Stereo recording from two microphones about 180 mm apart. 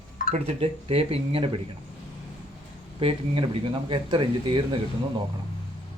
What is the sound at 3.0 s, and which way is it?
Speech, 30° right (ahead or behind).